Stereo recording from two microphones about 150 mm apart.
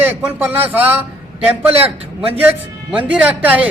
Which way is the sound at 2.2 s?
10° right (ahead or behind).